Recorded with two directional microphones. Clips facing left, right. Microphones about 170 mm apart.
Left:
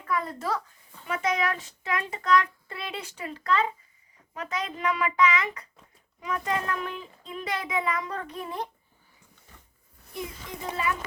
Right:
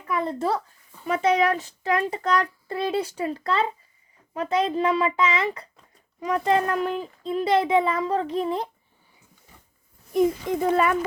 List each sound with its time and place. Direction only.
0.0 s a child's voice: 20° right (ahead or behind)
10.1 s a child's voice: 50° right (ahead or behind)